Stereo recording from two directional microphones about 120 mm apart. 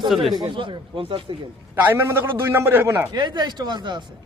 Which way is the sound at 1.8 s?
20° right (ahead or behind).